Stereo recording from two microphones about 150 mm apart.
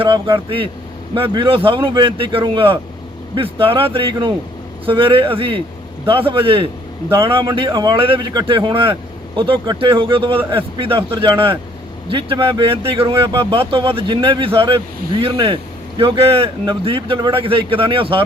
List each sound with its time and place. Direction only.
0.0 s speech: 35° right (ahead or behind)